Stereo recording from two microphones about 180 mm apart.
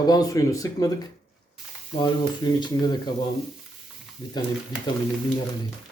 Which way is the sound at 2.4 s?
20° left (ahead or behind).